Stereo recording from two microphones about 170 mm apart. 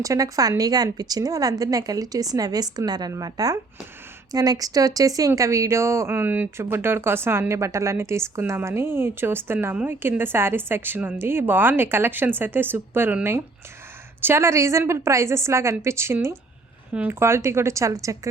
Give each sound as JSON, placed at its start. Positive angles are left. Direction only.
{"t": 0.0, "sound": "a woman's voice", "side_deg": -20}